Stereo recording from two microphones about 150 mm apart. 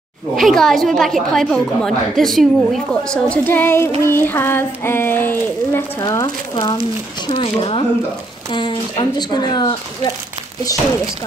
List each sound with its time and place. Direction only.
0.4 s a woman's voice: centre (ahead or behind)
4.0 s a sound: 15° left (ahead or behind)
7.2 s speech: 40° left (ahead or behind)